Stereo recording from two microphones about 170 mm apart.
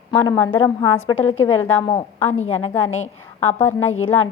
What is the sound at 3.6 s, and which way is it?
Speech, 15° left (ahead or behind).